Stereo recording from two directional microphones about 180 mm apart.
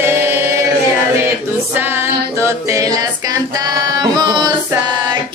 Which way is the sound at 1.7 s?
10° right (ahead or behind).